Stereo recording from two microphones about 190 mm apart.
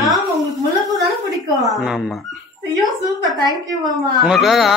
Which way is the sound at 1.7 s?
Centre (ahead or behind).